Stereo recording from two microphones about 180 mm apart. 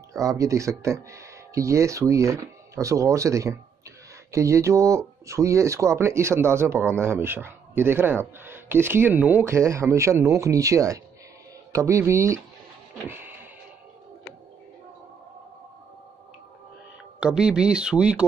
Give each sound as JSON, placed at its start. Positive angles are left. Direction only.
{"t": 0.1, "sound": "speech", "side_deg": -20}
{"t": 13.1, "sound": "music", "side_deg": -10}
{"t": 17.2, "sound": "speech", "side_deg": -5}